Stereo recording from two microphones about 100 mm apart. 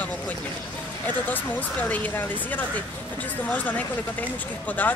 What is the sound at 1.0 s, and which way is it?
Speech, 15° left (ahead or behind).